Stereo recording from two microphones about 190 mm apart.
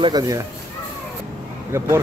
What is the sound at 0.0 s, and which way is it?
Speech, 20° right (ahead or behind).